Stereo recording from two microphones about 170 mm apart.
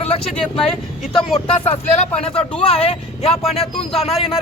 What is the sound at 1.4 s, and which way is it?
Speech, 35° left (ahead or behind).